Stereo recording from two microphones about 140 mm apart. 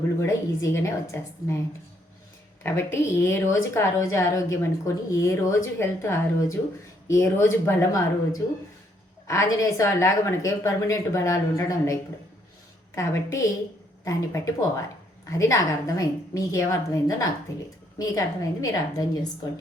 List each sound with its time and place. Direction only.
0.2 s a woman's voice: 20° left (ahead or behind)
2.6 s a woman's voice: 15° left (ahead or behind)